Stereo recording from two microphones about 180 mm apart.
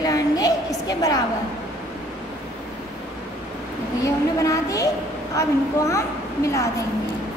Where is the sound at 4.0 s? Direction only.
20° left (ahead or behind).